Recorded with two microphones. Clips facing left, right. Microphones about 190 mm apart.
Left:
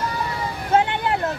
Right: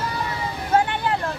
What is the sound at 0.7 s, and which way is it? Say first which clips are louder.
Vehicle: left 1 dB; 20° left (ahead or behind).